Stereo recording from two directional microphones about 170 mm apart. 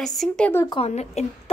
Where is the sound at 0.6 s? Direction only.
35° left (ahead or behind).